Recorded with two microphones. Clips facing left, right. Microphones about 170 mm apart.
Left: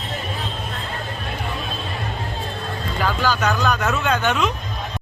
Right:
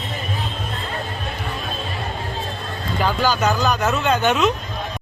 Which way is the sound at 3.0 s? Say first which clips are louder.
Right 2 dB; 5° right (ahead or behind).